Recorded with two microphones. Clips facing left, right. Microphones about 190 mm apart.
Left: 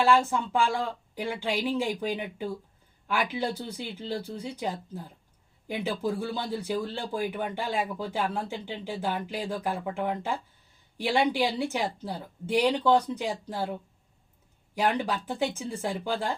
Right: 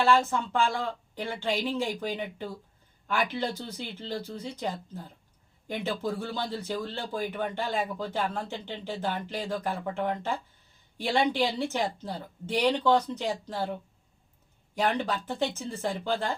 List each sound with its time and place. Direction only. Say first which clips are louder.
0.0 s speech: left 1 dB; 10° left (ahead or behind)
14.8 s speech: left 1 dB; 10° left (ahead or behind)